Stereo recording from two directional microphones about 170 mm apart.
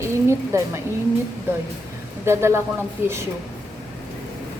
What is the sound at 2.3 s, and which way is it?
Speech, 15° right (ahead or behind).